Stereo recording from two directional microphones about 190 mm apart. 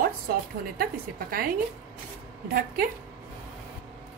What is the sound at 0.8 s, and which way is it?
Speech, 55° right (ahead or behind).